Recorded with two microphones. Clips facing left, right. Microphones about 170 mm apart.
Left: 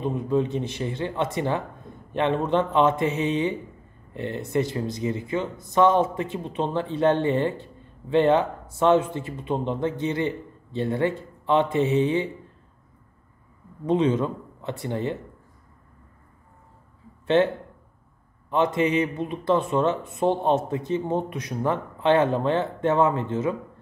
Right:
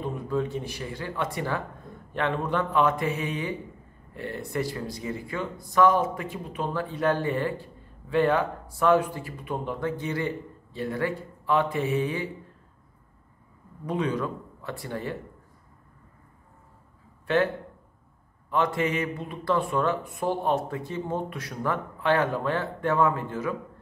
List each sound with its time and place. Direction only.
0.0 s speech: 20° left (ahead or behind)
13.8 s speech: 25° left (ahead or behind)
17.4 s speech: 25° left (ahead or behind)